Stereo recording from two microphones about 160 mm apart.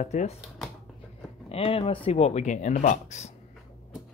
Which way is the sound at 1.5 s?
40° left (ahead or behind).